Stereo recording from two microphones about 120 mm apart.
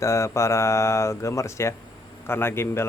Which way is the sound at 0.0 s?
25° left (ahead or behind).